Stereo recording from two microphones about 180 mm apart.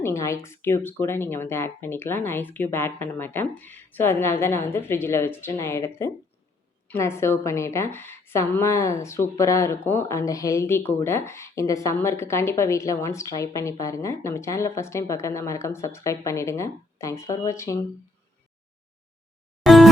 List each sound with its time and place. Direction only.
0.0 s a woman's voice: 15° left (ahead or behind)
19.6 s music: centre (ahead or behind)